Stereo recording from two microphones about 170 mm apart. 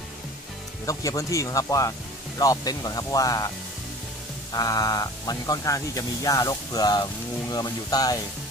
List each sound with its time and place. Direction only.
0.8 s speech: 20° left (ahead or behind)